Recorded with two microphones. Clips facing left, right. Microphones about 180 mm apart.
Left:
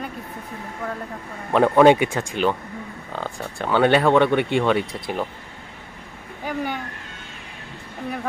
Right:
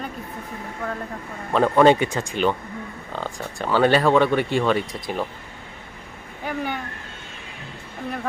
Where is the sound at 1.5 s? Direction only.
10° left (ahead or behind).